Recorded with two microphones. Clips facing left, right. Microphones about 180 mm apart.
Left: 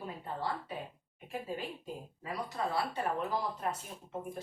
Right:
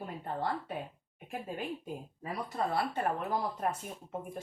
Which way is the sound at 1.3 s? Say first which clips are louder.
Right 1 dB; 50° right (ahead or behind).